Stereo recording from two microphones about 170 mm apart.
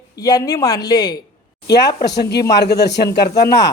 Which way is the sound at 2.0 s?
80° left.